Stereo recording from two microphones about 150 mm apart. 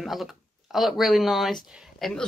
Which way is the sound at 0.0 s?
Centre (ahead or behind).